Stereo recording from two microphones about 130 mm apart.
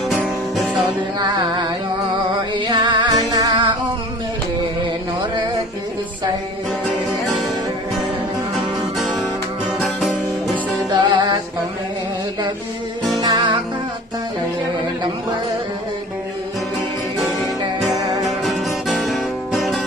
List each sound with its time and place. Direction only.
0.1 s music: centre (ahead or behind)
2.5 s music: 35° right (ahead or behind)
9.0 s music: centre (ahead or behind)
10.8 s music: 35° right (ahead or behind)
13.2 s music: 35° right (ahead or behind)
17.2 s music: centre (ahead or behind)